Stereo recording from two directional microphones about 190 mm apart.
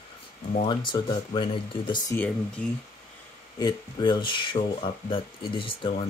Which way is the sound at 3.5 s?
20° left (ahead or behind).